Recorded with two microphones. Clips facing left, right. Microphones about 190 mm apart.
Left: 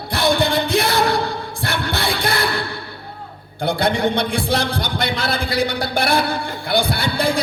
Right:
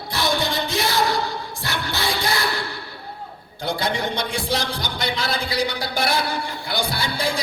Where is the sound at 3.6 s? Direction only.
60° left (ahead or behind).